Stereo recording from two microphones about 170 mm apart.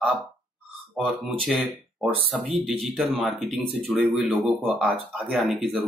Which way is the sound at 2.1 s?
30° right (ahead or behind).